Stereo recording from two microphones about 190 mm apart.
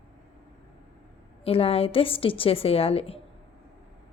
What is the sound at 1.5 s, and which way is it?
A woman's voice, 30° left (ahead or behind).